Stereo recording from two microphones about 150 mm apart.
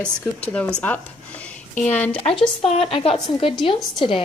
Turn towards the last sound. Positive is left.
turn(degrees=35)  # may be behind; listen again after turning